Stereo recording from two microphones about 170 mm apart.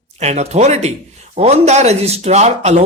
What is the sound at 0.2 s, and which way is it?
Speech, 40° right (ahead or behind).